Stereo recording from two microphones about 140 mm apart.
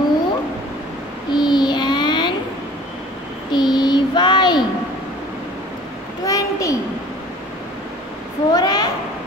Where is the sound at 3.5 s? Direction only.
30° left (ahead or behind).